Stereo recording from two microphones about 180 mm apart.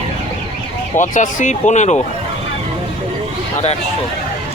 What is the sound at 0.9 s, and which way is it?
Speech, 45° left (ahead or behind).